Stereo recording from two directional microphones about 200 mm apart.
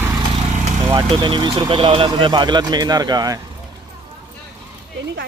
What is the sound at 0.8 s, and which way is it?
Speech, 15° right (ahead or behind).